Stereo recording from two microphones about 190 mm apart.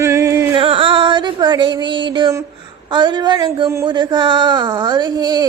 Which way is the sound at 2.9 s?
25° right (ahead or behind).